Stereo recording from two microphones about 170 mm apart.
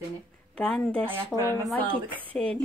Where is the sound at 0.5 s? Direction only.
5° left (ahead or behind).